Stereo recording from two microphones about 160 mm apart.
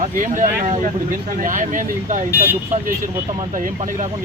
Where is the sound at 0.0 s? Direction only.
55° right (ahead or behind).